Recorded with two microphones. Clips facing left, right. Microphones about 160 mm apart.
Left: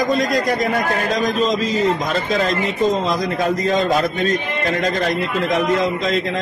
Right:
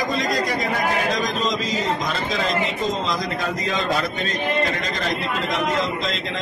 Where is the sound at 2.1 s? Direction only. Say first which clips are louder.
Left 4 dB; 50° left (ahead or behind).